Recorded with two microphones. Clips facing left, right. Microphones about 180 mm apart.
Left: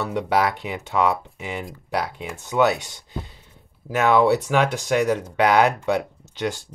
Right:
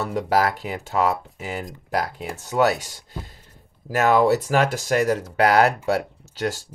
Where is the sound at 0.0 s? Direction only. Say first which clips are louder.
Even; 40° right (ahead or behind).